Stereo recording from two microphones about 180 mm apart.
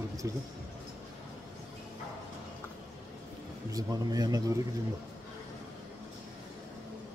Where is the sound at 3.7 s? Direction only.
20° right (ahead or behind).